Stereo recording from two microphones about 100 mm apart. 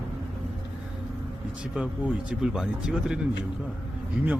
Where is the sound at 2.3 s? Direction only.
5° right (ahead or behind).